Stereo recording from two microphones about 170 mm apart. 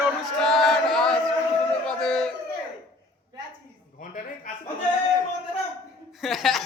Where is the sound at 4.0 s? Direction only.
50° left (ahead or behind).